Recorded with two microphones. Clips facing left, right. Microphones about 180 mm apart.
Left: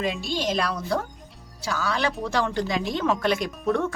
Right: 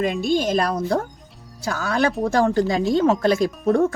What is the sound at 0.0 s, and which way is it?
Speech, 50° right (ahead or behind).